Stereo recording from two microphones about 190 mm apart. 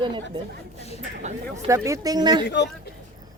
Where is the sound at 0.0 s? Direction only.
25° right (ahead or behind).